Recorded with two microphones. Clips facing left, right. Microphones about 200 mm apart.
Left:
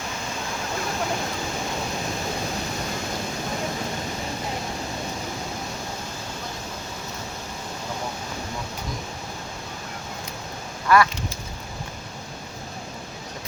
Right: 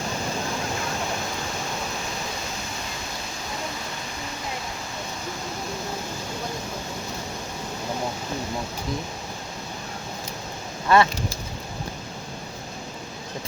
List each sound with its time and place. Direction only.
10.8 s speech: 25° right (ahead or behind)